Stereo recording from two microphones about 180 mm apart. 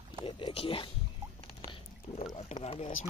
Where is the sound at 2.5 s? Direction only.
40° left (ahead or behind).